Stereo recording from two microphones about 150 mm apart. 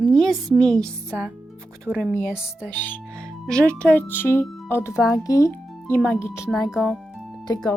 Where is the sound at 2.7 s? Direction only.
15° left (ahead or behind).